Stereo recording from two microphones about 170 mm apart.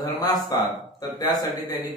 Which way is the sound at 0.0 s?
20° left (ahead or behind).